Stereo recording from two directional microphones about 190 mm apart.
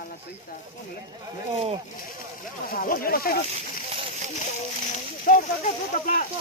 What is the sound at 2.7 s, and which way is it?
Speech, 50° left (ahead or behind).